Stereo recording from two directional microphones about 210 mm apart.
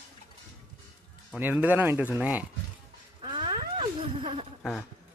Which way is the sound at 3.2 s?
20° right (ahead or behind).